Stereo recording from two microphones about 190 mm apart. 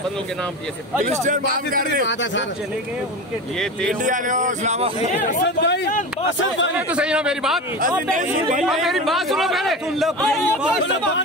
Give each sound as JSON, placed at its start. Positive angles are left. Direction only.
{"t": 1.0, "sound": "speech", "side_deg": -40}
{"t": 4.0, "sound": "speech", "side_deg": -40}
{"t": 5.0, "sound": "speech", "side_deg": 40}
{"t": 5.4, "sound": "speech", "side_deg": 65}
{"t": 6.9, "sound": "a man's voice", "side_deg": -5}
{"t": 8.1, "sound": "speech", "side_deg": -45}
{"t": 8.6, "sound": "a man's voice", "side_deg": 0}